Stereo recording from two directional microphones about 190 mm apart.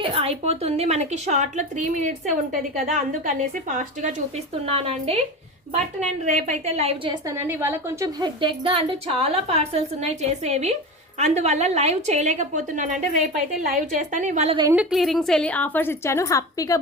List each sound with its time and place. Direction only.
0.0 s a woman's voice: 30° right (ahead or behind)
14.5 s a woman's voice: 20° right (ahead or behind)
14.8 s a woman's voice: centre (ahead or behind); by 16.8 s 20° left (ahead or behind)